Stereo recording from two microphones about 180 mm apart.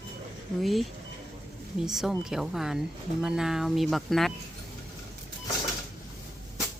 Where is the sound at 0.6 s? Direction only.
Centre (ahead or behind).